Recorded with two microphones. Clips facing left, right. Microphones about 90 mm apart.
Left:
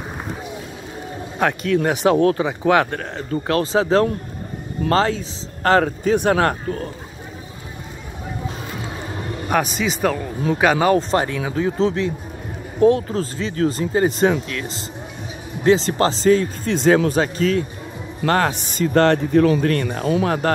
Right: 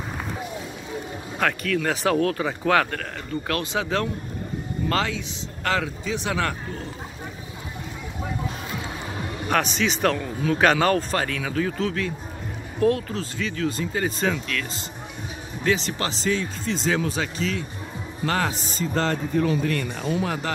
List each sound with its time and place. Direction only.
1.4 s speech: 25° left (ahead or behind); by 6.8 s 50° left (ahead or behind)
9.5 s speech: 10° left (ahead or behind); by 12.1 s 25° left (ahead or behind)
13.1 s a man's voice: 35° left (ahead or behind); by 19.7 s 75° left (ahead or behind)
19.7 s speech: 55° left (ahead or behind)